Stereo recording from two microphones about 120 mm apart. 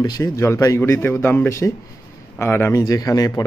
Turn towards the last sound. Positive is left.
turn(degrees=30)  # may be behind; listen again after turning